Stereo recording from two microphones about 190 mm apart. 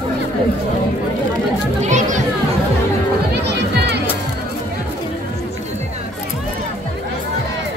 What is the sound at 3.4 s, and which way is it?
Music, 60° right (ahead or behind).